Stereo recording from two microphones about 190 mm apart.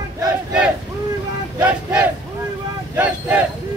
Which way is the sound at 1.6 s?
10° right (ahead or behind).